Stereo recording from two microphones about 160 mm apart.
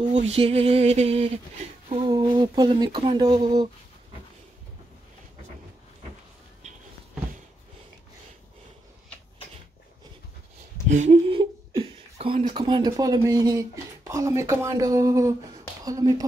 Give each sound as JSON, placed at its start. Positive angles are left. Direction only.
{"t": 0.1, "sound": "a sound", "side_deg": -45}
{"t": 2.0, "sound": "speech", "side_deg": -30}
{"t": 10.9, "sound": "speech", "side_deg": -50}
{"t": 11.2, "sound": "speech", "side_deg": -35}